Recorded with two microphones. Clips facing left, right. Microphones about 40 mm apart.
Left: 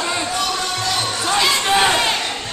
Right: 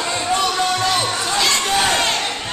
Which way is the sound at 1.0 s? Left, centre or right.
Centre.